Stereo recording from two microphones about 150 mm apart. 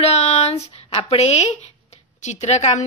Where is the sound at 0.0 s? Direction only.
45° left (ahead or behind).